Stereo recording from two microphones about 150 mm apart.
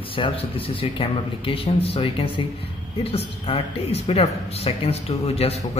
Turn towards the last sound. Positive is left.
turn(degrees=45)  # may be behind; listen again after turning